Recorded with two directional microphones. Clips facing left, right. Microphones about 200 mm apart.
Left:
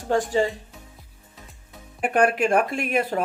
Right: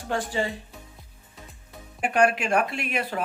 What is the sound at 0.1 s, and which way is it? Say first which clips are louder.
Speech: left 6 dB; 40° left (ahead or behind).